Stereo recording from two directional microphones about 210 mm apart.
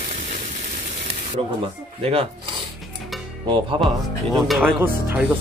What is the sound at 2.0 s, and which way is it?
Speech, 25° right (ahead or behind).